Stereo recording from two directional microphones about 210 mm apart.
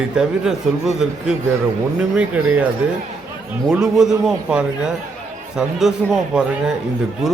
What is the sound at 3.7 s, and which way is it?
A man's voice, 5° right (ahead or behind).